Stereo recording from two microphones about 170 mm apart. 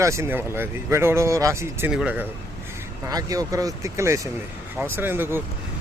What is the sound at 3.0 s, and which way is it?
Speech, 20° right (ahead or behind).